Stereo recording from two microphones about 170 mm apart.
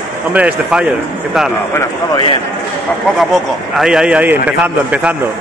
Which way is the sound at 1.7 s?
15° left (ahead or behind).